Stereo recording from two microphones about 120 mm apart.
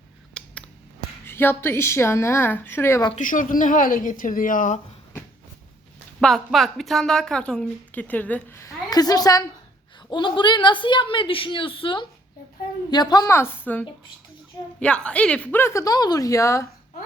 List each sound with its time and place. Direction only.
0.3 s a sound: 10° left (ahead or behind)
1.2 s a woman's voice: 20° left (ahead or behind)
3.2 s a woman's voice: 90° left
6.1 s a woman's voice: centre (ahead or behind); by 13.3 s 35° left (ahead or behind)
13.3 s a woman's voice: 20° left (ahead or behind)
15.6 s a woman's voice: 25° left (ahead or behind)